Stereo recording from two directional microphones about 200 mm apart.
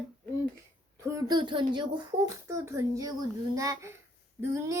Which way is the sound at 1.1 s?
20° right (ahead or behind).